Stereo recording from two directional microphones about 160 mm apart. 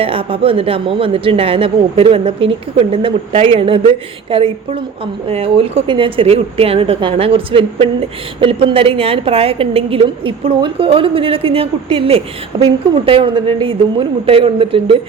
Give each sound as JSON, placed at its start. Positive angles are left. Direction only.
{"t": 0.0, "sound": "a woman's voice", "side_deg": -35}